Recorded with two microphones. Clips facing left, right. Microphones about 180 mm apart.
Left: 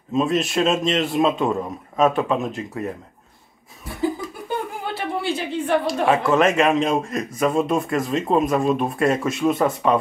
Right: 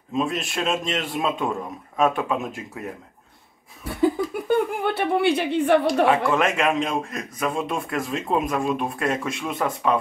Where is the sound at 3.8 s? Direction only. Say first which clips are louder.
Right 3 dB; 65° right (ahead or behind).